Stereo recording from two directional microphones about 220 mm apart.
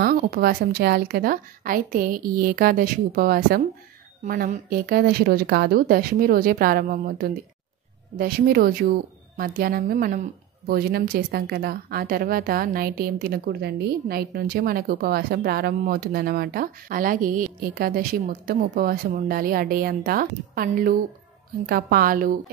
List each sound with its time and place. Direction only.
0.0 s a woman's voice: 45° right (ahead or behind)